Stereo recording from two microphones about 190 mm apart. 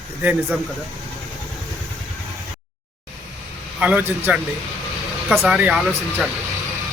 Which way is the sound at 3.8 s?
5° right (ahead or behind).